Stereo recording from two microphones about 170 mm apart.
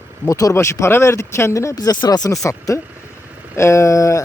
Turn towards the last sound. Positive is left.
turn(degrees=20)  # may be behind; listen again after turning